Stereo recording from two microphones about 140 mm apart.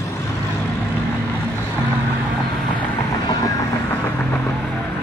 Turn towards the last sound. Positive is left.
turn(degrees=25)  # may be behind; listen again after turning